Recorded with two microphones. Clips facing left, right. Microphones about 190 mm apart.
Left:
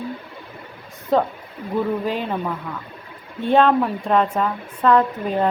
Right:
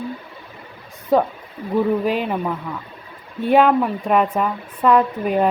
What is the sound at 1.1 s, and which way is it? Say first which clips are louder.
A woman's voice: right 2 dB; 10° right (ahead or behind).